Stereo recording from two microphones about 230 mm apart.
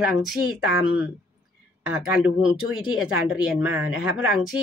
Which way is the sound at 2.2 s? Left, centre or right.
Centre.